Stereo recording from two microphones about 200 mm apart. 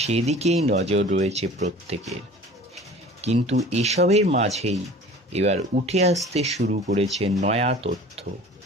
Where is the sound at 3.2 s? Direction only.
30° right (ahead or behind).